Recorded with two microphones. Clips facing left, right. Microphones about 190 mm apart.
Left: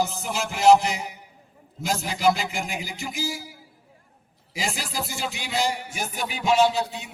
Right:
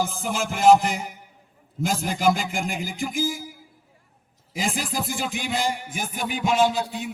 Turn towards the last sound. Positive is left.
turn(degrees=-50)  # may be behind; listen again after turning